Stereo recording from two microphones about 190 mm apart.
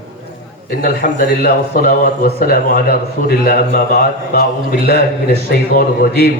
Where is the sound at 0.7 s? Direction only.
45° left (ahead or behind).